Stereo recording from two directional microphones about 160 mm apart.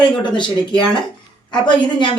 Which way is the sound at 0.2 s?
30° left (ahead or behind).